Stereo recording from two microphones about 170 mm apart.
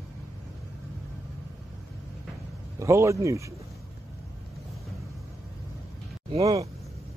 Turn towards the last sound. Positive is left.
turn(degrees=-20)  # may be behind; listen again after turning